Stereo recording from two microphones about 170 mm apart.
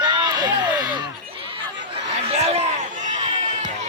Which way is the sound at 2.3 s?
40° right (ahead or behind).